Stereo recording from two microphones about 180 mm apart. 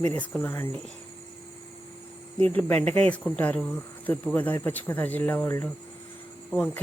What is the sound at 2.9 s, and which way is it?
Speech, 5° left (ahead or behind).